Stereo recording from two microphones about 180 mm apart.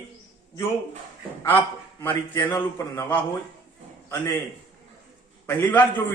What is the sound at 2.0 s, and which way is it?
A man's voice, 15° left (ahead or behind).